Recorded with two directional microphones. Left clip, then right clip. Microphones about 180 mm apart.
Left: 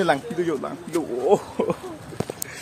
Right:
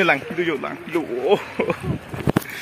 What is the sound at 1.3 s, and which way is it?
Speech, 15° left (ahead or behind).